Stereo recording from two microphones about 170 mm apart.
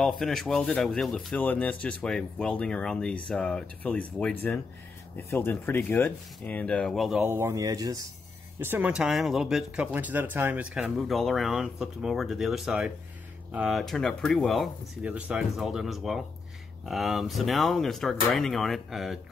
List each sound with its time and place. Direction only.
0.2 s speech: centre (ahead or behind)
7.2 s speech: 15° right (ahead or behind)